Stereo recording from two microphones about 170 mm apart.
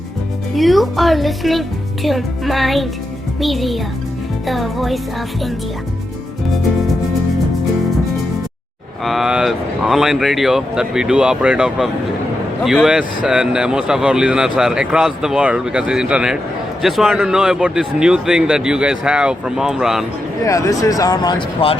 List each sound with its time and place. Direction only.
0.5 s speech: centre (ahead or behind)
9.0 s speech: centre (ahead or behind)
20.4 s speech: 20° left (ahead or behind)